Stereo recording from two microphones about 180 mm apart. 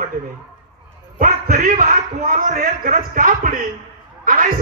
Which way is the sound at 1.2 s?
50° right (ahead or behind).